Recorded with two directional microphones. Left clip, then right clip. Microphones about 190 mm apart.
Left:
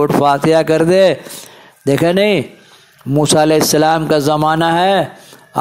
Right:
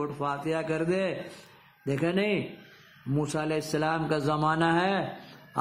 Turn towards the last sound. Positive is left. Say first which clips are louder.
# left 14 dB
turn(degrees=40)  # may be behind; listen again after turning